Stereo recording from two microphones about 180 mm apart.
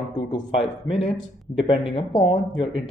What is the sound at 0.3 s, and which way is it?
Speech, 30° left (ahead or behind).